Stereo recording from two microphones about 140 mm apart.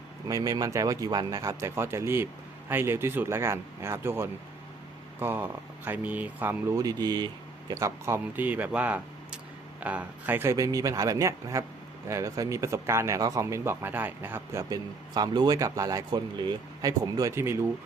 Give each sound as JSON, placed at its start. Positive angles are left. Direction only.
{"t": 0.3, "sound": "speech", "side_deg": -25}